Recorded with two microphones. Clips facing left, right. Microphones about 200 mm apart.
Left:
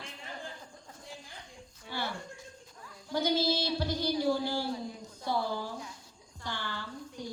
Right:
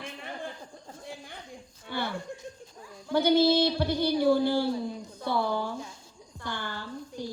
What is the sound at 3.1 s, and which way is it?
A woman's voice, 60° right (ahead or behind).